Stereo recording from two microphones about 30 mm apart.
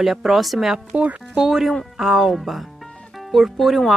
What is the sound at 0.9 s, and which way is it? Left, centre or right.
Speech, right.